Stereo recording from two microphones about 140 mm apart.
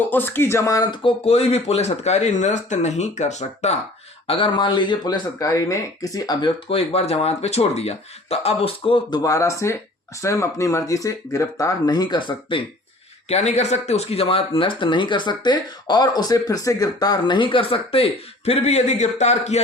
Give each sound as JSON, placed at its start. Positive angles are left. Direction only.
{"t": 0.0, "sound": "speech", "side_deg": 15}
{"t": 4.3, "sound": "speech", "side_deg": 40}
{"t": 6.7, "sound": "speech", "side_deg": 45}
{"t": 13.2, "sound": "speech", "side_deg": 50}